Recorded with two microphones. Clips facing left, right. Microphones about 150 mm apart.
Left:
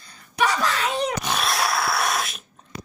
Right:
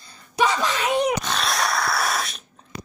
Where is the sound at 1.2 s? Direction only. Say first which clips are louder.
Even; 5° left (ahead or behind).